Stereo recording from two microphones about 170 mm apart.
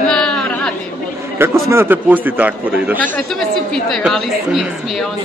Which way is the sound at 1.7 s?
15° right (ahead or behind).